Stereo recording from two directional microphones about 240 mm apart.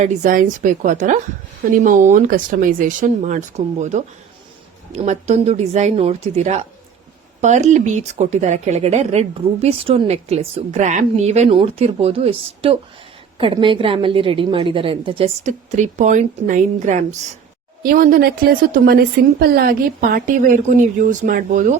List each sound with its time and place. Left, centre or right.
0.0 s a woman's voice: right